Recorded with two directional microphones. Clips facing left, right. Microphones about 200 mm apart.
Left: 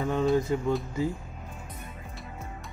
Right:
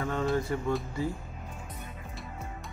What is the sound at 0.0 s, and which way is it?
Music, 20° left (ahead or behind).